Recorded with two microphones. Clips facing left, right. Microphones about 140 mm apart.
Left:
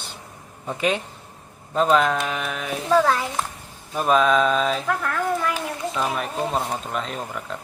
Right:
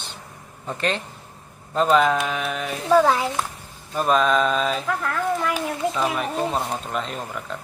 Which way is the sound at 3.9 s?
Centre (ahead or behind).